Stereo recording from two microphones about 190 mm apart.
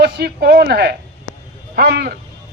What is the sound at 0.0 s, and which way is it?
A man's voice, 55° right (ahead or behind).